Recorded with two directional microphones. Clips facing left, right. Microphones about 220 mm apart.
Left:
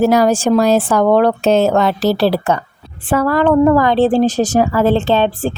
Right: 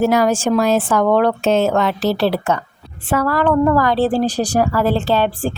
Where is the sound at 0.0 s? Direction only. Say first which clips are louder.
Left 3 dB; 35° left (ahead or behind).